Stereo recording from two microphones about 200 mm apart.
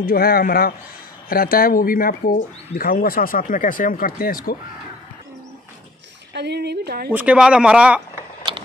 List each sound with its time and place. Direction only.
0.0 s speech: 50° left (ahead or behind)
6.3 s speech: 55° right (ahead or behind)
7.1 s speech: 5° right (ahead or behind)